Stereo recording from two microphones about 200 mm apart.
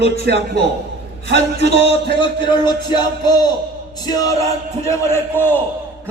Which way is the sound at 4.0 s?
20° left (ahead or behind).